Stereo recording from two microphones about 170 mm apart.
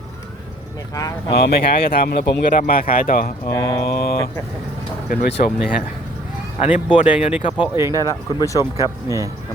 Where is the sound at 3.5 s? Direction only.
20° left (ahead or behind).